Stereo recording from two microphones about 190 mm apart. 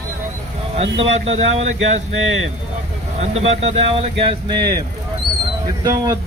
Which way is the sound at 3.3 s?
35° right (ahead or behind).